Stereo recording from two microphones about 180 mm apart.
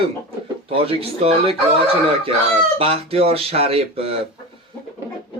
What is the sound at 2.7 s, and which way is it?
Speech, 30° right (ahead or behind).